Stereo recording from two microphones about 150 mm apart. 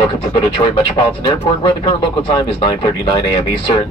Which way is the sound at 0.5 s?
35° left (ahead or behind).